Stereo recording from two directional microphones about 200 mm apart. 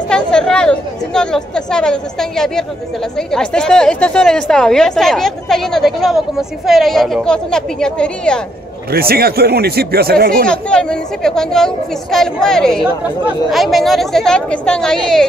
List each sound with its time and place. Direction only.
0.1 s a woman's voice: 5° left (ahead or behind)
8.9 s speech: 50° right (ahead or behind)
10.4 s a woman's voice: 5° left (ahead or behind)